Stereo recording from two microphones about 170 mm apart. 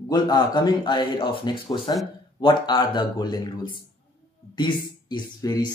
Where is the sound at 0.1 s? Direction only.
25° left (ahead or behind).